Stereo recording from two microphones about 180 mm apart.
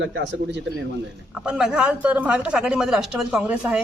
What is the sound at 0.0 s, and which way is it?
Speech, 85° right.